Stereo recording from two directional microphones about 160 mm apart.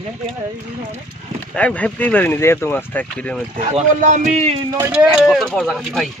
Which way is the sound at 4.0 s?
50° right (ahead or behind).